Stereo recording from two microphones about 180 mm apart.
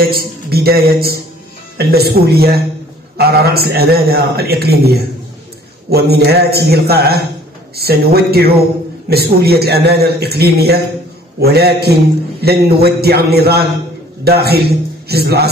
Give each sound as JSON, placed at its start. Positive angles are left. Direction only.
{"t": 0.0, "sound": "a man's voice", "side_deg": -55}